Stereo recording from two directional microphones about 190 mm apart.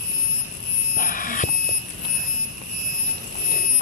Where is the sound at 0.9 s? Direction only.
45° left (ahead or behind).